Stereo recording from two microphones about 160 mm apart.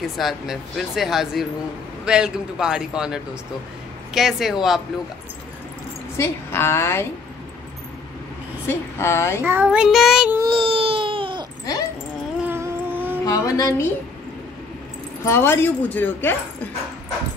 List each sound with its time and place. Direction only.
0.0 s speech: centre (ahead or behind)
6.1 s speech: 15° left (ahead or behind)
8.6 s speech: 15° left (ahead or behind)
9.4 s child singing: 10° right (ahead or behind)
10.4 s baby cry: 30° right (ahead or behind)
12.4 s a sound: 15° right (ahead or behind)
13.2 s a sound: 20° left (ahead or behind)
15.2 s speech: 15° left (ahead or behind)